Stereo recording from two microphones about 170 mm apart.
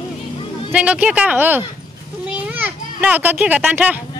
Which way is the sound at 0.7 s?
5° right (ahead or behind).